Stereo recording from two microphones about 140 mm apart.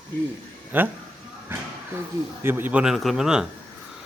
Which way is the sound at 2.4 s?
15° right (ahead or behind).